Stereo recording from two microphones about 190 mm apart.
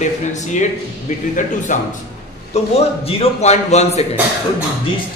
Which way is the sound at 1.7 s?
40° left (ahead or behind).